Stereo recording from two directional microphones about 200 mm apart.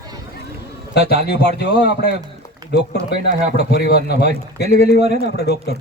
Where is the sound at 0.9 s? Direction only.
55° left (ahead or behind).